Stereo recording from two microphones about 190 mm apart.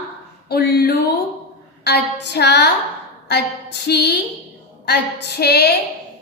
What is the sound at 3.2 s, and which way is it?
Speech, 60° left (ahead or behind).